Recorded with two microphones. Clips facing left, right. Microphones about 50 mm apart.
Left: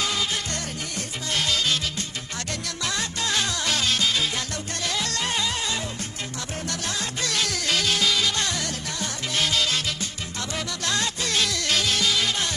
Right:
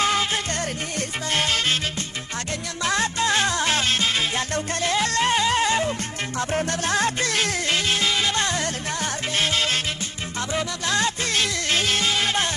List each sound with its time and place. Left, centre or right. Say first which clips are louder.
0.0 s music: right 5 dB; right
7.3 s music: right 3 dB; right
10.5 s music: right 4 dB; right
11.0 s music: right 2 dB; right